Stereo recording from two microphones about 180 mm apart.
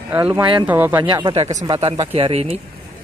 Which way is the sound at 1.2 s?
35° right (ahead or behind).